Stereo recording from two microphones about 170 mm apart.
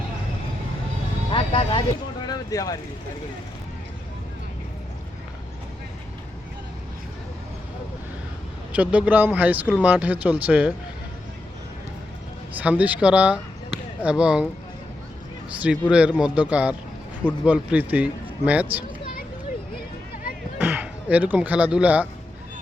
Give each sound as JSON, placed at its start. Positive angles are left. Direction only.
{"t": 1.3, "sound": "music", "side_deg": 30}
{"t": 2.2, "sound": "vehicle", "side_deg": 20}
{"t": 8.7, "sound": "a man's voice", "side_deg": -5}
{"t": 12.5, "sound": "a man's voice", "side_deg": -10}
{"t": 15.6, "sound": "a man's voice", "side_deg": -5}
{"t": 20.6, "sound": "speech", "side_deg": -10}